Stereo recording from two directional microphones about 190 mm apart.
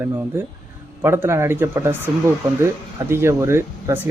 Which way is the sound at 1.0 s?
15° right (ahead or behind).